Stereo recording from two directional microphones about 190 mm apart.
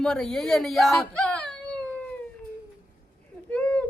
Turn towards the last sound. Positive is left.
turn(degrees=5)  # may be behind; listen again after turning